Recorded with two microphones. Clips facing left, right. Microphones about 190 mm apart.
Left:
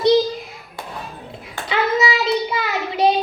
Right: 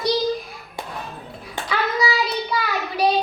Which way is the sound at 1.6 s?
20° left (ahead or behind).